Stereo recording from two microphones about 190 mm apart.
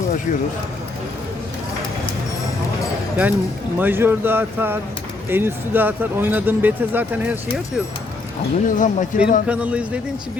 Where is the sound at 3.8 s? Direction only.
10° right (ahead or behind).